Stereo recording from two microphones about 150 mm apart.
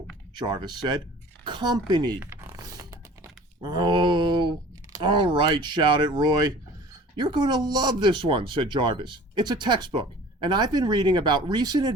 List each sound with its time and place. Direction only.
0.3 s speech: 30° right (ahead or behind)
2.2 s zipper: 15° right (ahead or behind)
2.6 s typing: 25° right (ahead or behind)
3.6 s speech: 30° right (ahead or behind)